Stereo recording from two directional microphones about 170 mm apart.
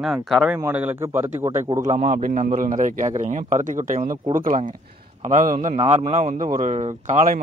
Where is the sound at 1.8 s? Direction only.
45° right (ahead or behind).